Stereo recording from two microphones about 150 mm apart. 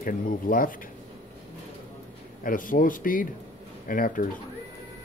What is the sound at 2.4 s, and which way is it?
Speech, 65° left (ahead or behind).